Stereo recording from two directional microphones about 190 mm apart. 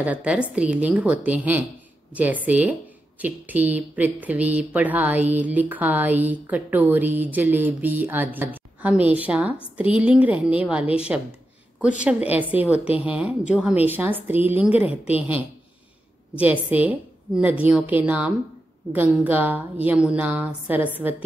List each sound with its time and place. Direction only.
0.0 s speech: 5° right (ahead or behind)